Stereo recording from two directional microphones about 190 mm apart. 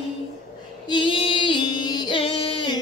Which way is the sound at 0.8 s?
25° left (ahead or behind).